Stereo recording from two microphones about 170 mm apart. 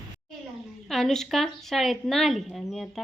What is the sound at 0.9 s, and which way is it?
Speech, centre (ahead or behind).